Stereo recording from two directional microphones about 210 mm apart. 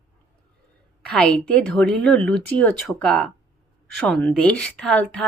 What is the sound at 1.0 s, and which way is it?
A woman's voice, 5° left (ahead or behind).